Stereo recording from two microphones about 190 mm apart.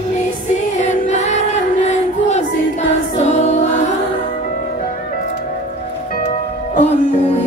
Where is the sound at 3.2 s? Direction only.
35° left (ahead or behind).